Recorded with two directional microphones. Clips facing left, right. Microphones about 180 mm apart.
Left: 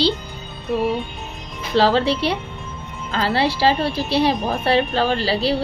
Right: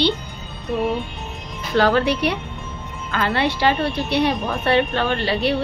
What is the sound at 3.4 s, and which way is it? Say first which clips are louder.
Speech: left 2 dB; 30° left (ahead or behind).